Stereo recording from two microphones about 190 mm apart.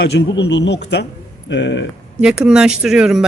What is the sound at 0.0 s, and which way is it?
Speech, 65° left (ahead or behind).